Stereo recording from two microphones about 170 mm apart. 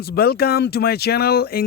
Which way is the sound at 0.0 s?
65° left (ahead or behind).